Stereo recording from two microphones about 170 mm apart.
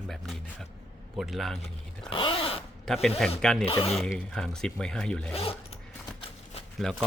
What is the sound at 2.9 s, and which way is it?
Speech, centre (ahead or behind).